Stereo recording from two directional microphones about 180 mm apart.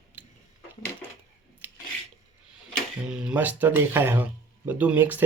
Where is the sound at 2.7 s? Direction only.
5° right (ahead or behind).